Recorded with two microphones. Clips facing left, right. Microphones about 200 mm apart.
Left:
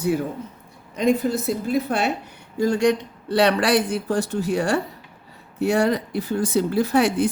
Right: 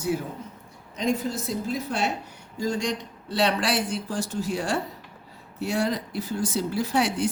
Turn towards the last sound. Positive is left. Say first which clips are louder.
# left 6 dB
turn(degrees=60)  # may be behind; listen again after turning